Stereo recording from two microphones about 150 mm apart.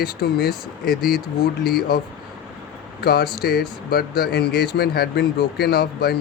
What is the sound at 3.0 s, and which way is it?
Speech, 90° left.